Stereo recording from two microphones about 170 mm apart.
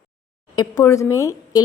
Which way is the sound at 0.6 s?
20° left (ahead or behind).